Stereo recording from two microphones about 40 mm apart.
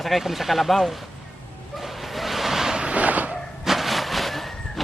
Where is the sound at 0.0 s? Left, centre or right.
Centre.